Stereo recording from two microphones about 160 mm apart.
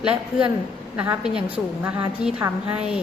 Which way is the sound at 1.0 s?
5° right (ahead or behind).